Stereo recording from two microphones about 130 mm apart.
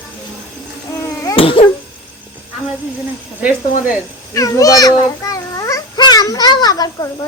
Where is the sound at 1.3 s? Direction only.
45° left (ahead or behind).